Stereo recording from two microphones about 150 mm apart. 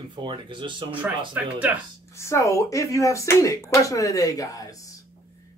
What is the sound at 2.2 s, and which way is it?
Speech, 20° left (ahead or behind).